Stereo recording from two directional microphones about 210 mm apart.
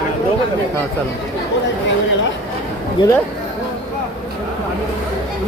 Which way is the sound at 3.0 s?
20° left (ahead or behind).